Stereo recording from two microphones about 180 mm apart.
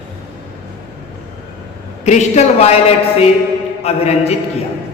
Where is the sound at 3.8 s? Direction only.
35° left (ahead or behind).